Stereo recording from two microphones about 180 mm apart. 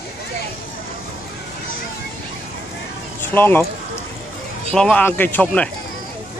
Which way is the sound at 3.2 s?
10° left (ahead or behind).